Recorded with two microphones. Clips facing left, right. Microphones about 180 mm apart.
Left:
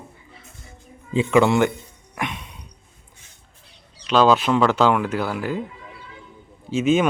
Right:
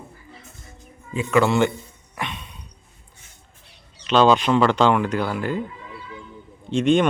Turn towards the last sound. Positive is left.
turn(degrees=5)  # may be behind; listen again after turning